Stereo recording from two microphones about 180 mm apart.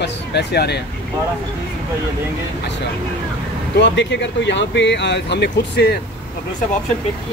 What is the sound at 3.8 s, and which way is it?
Speech, 75° left (ahead or behind).